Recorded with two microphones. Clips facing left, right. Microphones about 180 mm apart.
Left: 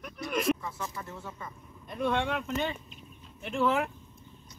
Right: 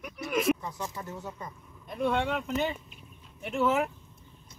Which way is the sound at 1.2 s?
20° right (ahead or behind).